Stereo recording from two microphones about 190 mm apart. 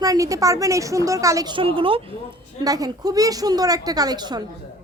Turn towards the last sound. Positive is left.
turn(degrees=-20)  # may be behind; listen again after turning